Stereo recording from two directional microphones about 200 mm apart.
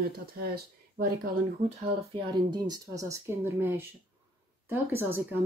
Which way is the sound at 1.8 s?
25° right (ahead or behind).